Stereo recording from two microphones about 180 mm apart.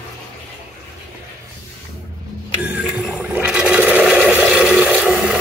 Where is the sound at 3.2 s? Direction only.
5° right (ahead or behind).